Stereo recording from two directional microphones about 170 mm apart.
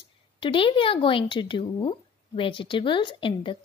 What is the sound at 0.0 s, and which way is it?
A woman's voice, 30° left (ahead or behind).